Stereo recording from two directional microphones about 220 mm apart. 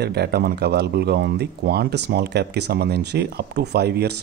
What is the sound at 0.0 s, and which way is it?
Speech, 45° right (ahead or behind).